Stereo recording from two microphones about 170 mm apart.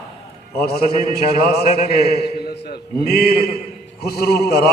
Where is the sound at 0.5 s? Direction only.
65° left (ahead or behind).